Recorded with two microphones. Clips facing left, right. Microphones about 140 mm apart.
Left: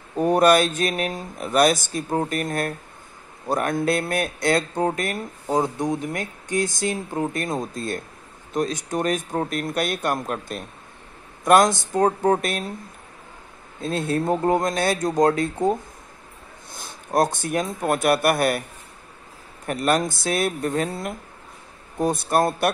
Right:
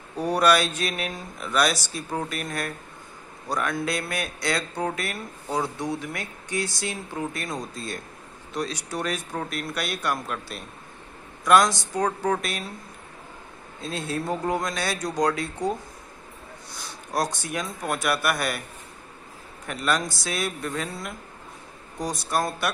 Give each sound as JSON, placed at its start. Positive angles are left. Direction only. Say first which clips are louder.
{"t": 0.2, "sound": "speech", "louder": "left 4 dB", "side_deg": 50}
{"t": 13.7, "sound": "speech", "louder": "left 6 dB", "side_deg": 50}
{"t": 19.6, "sound": "speech", "louder": "left 5 dB", "side_deg": 50}